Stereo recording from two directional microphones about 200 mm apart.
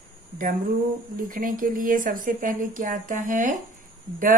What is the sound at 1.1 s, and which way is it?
Speech, 40° right (ahead or behind).